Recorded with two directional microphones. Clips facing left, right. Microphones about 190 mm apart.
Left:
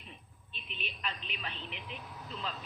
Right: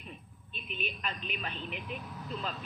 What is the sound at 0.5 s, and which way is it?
A woman's voice, 50° right (ahead or behind).